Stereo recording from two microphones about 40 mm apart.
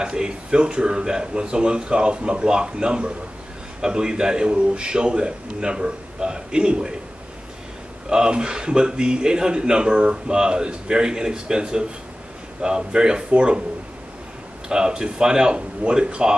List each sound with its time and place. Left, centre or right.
0.0 s a man's voice: right
8.1 s a man's voice: centre
14.7 s a man's voice: centre